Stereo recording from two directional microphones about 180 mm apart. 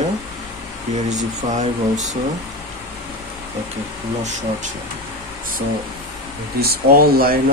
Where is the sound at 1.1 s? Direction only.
40° right (ahead or behind).